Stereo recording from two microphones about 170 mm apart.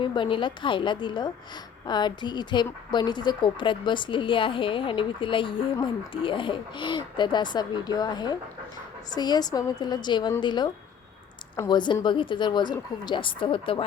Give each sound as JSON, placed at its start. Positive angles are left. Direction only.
{"t": 0.0, "sound": "speech", "side_deg": 30}
{"t": 11.7, "sound": "speech", "side_deg": 25}